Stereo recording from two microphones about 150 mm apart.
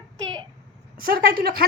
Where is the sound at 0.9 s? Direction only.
75° right (ahead or behind).